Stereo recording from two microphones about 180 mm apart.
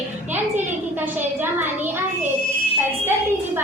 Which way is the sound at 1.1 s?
10° right (ahead or behind).